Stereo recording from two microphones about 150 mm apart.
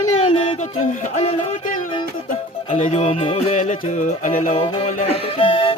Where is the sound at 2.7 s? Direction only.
50° left (ahead or behind).